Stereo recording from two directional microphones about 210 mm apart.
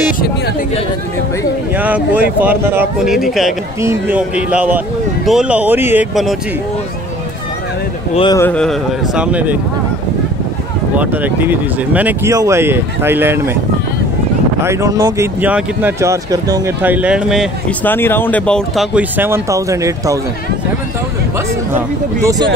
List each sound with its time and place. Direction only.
1.8 s speech: 10° right (ahead or behind)
8.1 s speech: 25° left (ahead or behind)
8.4 s speech: 5° left (ahead or behind)
11.0 s speech: 10° right (ahead or behind)
14.6 s speech: 15° right (ahead or behind)
17.8 s speech: 10° left (ahead or behind)
18.9 s speech: 10° right (ahead or behind)
22.2 s speech: 15° right (ahead or behind)